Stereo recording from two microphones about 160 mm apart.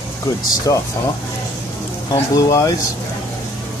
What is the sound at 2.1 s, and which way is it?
Speech, 20° left (ahead or behind).